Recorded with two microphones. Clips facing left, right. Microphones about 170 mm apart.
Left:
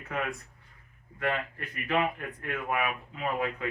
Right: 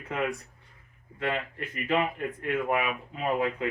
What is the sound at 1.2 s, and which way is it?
Speech, 25° right (ahead or behind).